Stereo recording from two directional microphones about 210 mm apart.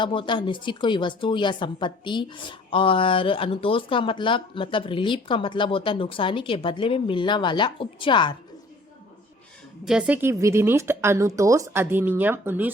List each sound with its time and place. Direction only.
0.0 s speech: 25° left (ahead or behind)
9.8 s speech: 5° right (ahead or behind)